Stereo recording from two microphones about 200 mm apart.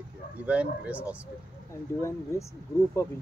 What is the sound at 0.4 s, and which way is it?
Speech, 5° right (ahead or behind).